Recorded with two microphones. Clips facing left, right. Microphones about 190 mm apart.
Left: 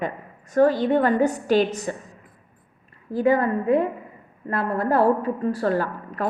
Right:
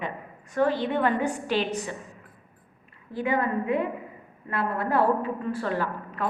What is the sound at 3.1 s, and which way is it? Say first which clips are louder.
A woman's voice: left 6 dB; 40° left (ahead or behind).